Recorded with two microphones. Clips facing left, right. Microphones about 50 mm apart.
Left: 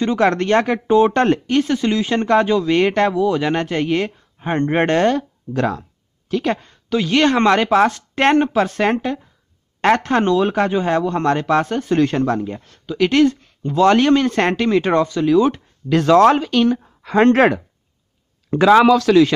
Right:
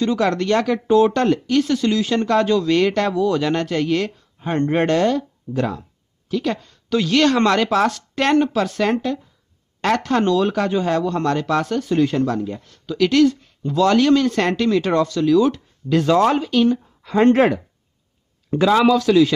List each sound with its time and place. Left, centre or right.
0.0 s speech: left
5.5 s speech: left
6.9 s a man's voice: centre
7.2 s speech: left
11.9 s speech: left
15.9 s speech: left